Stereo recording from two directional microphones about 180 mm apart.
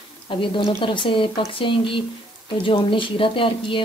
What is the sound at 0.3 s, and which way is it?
Speech, 30° left (ahead or behind).